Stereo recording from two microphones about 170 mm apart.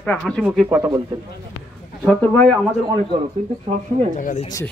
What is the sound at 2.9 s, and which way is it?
A man's voice, 30° right (ahead or behind).